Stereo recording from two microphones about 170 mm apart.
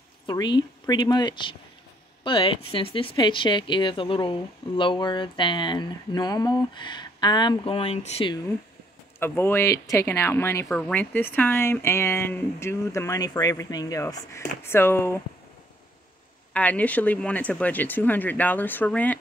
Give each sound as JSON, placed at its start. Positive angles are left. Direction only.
{"t": 0.3, "sound": "speech", "side_deg": 25}
{"t": 9.2, "sound": "speech", "side_deg": 15}
{"t": 16.5, "sound": "speech", "side_deg": 10}